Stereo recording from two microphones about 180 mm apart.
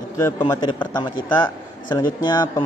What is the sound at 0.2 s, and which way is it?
A man's voice, 20° left (ahead or behind).